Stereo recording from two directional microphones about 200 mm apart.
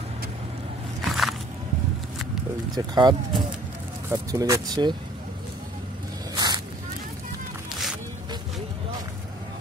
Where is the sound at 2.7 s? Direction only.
20° right (ahead or behind).